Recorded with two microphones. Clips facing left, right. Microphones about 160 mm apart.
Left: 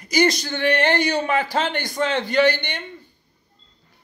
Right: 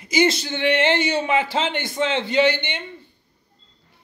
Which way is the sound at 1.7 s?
20° right (ahead or behind).